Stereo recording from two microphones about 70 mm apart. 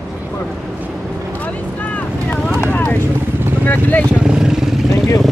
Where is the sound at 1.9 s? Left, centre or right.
Centre.